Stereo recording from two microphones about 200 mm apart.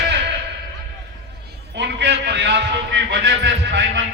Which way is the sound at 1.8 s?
60° right (ahead or behind).